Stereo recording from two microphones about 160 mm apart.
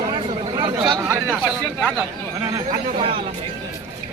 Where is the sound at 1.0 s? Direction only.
15° right (ahead or behind).